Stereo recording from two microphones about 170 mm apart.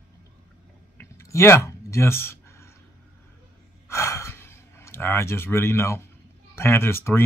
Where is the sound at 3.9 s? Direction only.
15° left (ahead or behind).